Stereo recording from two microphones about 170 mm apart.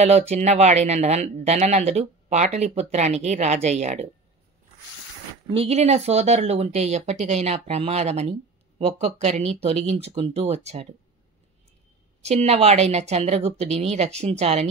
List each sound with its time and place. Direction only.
0.3 s speech: 40° right (ahead or behind)
5.5 s speech: 35° right (ahead or behind)
12.2 s speech: 40° right (ahead or behind)